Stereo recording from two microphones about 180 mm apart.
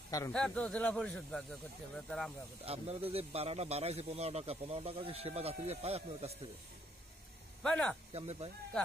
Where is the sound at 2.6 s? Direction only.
35° right (ahead or behind).